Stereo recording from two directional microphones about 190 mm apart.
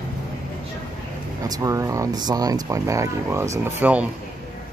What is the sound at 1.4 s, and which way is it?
Speech, 20° right (ahead or behind).